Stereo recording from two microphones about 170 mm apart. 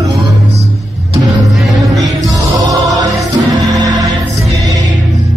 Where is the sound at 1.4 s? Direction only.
Centre (ahead or behind).